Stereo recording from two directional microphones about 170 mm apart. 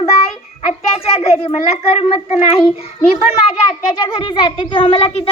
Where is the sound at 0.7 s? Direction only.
35° left (ahead or behind).